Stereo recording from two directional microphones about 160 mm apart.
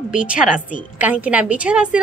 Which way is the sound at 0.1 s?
5° right (ahead or behind).